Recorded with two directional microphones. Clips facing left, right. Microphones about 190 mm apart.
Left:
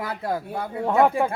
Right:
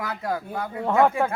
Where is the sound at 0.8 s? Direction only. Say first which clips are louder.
Left 1 dB; 10° left (ahead or behind).